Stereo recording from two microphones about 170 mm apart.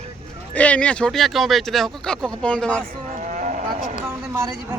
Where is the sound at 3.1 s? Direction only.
45° right (ahead or behind).